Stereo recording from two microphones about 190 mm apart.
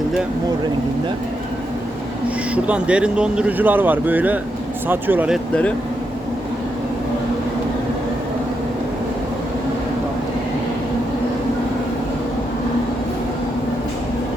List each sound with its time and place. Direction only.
2.6 s speech: 5° right (ahead or behind)